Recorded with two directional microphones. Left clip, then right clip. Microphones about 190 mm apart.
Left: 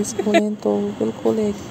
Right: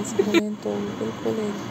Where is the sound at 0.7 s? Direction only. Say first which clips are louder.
Left 8 dB; 20° left (ahead or behind).